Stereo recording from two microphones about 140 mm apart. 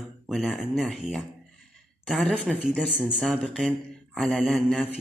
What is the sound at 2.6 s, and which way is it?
Speech, 5° right (ahead or behind).